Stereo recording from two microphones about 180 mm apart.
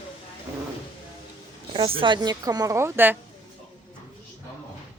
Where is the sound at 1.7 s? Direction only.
30° right (ahead or behind); by 3.1 s 15° right (ahead or behind).